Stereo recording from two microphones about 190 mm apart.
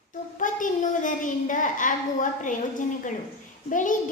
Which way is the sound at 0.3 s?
45° left (ahead or behind).